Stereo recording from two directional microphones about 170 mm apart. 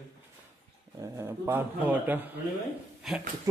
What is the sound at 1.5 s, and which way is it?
Speech, 10° right (ahead or behind).